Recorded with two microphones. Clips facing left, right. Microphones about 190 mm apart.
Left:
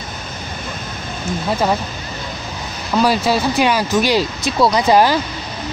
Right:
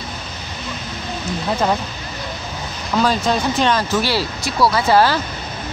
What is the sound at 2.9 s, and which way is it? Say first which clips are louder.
Speech: left 2 dB; 10° left (ahead or behind).